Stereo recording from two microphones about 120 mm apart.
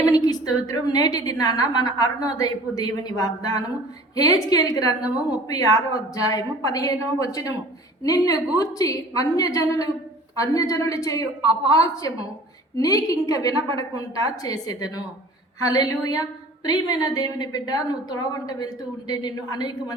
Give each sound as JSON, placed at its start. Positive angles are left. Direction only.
{"t": 0.0, "sound": "a woman's voice", "side_deg": 30}
{"t": 13.5, "sound": "a woman's voice", "side_deg": -45}
{"t": 14.4, "sound": "a woman's voice", "side_deg": 30}